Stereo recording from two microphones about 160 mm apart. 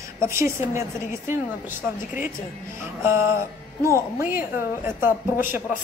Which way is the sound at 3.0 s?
15° right (ahead or behind).